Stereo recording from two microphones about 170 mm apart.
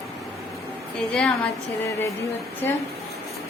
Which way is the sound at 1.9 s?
15° left (ahead or behind).